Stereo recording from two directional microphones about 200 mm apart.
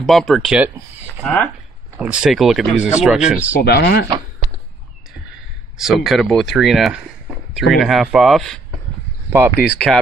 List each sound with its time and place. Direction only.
0.0 s speech: centre (ahead or behind)
2.0 s speech: 5° right (ahead or behind)
3.6 s speech: 55° left (ahead or behind)
5.8 s speech: centre (ahead or behind)
9.6 s speech: centre (ahead or behind)